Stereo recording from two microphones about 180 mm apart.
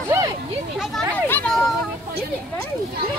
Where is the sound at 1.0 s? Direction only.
10° left (ahead or behind).